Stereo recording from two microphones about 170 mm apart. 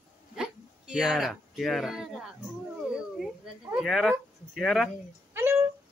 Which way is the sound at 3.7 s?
Centre (ahead or behind).